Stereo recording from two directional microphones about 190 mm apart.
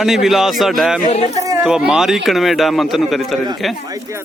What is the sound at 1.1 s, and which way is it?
Speech, 35° left (ahead or behind).